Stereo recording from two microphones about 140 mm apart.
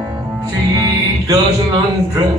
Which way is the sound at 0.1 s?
25° right (ahead or behind).